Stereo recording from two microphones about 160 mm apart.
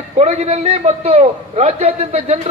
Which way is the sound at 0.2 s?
45° right (ahead or behind).